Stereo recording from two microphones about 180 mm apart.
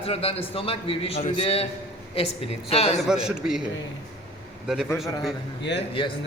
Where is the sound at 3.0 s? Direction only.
5° right (ahead or behind).